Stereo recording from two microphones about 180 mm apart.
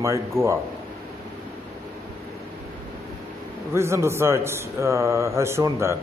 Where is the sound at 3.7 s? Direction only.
15° right (ahead or behind).